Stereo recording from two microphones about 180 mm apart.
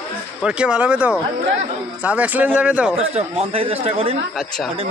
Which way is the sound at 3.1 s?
35° right (ahead or behind).